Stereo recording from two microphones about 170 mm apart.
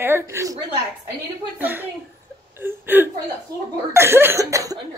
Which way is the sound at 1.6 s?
10° right (ahead or behind).